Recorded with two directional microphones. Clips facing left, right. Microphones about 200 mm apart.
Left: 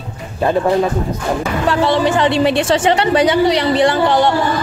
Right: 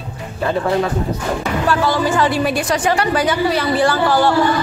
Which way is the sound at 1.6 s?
25° left (ahead or behind).